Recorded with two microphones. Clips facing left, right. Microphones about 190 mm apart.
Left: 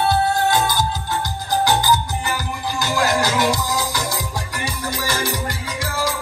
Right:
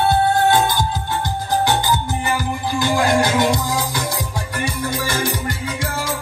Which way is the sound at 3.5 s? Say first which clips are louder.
Right 1 dB; 55° right (ahead or behind).